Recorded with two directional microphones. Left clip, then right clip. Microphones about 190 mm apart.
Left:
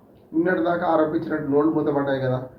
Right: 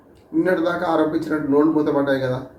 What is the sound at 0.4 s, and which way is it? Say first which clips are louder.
A man's voice: right 1 dB; 10° right (ahead or behind).